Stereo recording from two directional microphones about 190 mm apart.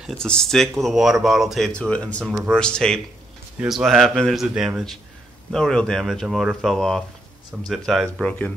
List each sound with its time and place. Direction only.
0.0 s speech: 5° left (ahead or behind)